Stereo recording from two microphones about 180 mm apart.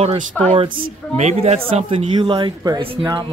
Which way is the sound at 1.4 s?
35° right (ahead or behind).